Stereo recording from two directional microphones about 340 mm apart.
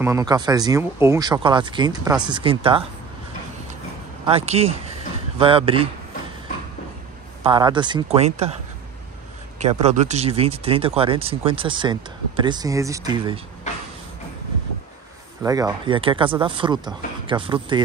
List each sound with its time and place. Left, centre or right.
0.0 s speech: centre
4.3 s speech: centre
7.4 s speech: centre
9.6 s speech: centre
15.4 s speech: centre